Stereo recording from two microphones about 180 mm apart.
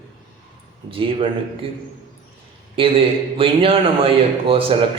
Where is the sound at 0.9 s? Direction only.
30° right (ahead or behind).